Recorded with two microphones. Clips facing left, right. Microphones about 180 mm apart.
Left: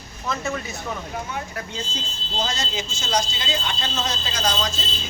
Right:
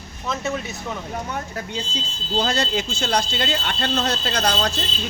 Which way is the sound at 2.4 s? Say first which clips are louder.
Right 5 dB; 60° right (ahead or behind).